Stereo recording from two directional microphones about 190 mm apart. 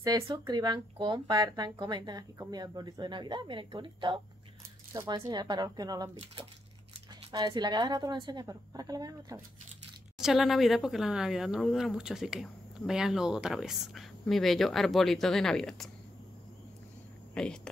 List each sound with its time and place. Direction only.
0.0 s speech: 20° right (ahead or behind)
7.2 s speech: 20° right (ahead or behind)
10.1 s speech: centre (ahead or behind)
17.3 s a sound: 5° left (ahead or behind)